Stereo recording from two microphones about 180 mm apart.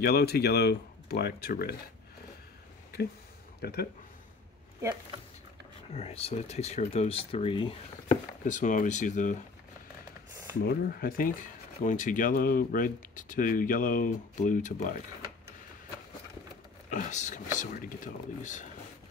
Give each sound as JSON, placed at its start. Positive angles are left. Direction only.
{"t": 0.0, "sound": "speech", "side_deg": 60}
{"t": 3.6, "sound": "speech", "side_deg": 60}
{"t": 5.9, "sound": "speech", "side_deg": 35}
{"t": 8.5, "sound": "speech", "side_deg": 45}
{"t": 10.6, "sound": "speech", "side_deg": 55}
{"t": 16.9, "sound": "speech", "side_deg": 40}